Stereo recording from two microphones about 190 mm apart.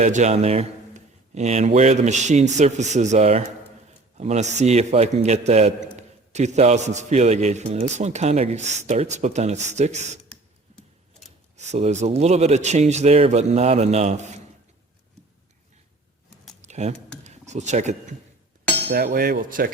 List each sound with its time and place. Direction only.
0.0 s a man's voice: 40° right (ahead or behind)
11.5 s a man's voice: 35° right (ahead or behind)
16.6 s a sound: 35° right (ahead or behind)
18.9 s speech: 50° right (ahead or behind)